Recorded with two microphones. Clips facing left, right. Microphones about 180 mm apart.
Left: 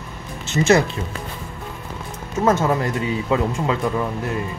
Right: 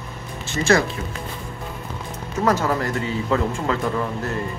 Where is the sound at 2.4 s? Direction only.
20° left (ahead or behind).